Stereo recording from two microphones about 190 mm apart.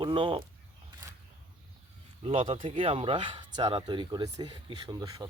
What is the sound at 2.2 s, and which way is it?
Speech, 30° right (ahead or behind).